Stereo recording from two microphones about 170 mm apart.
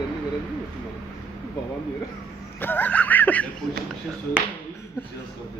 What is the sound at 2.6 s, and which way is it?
Speech, 10° left (ahead or behind).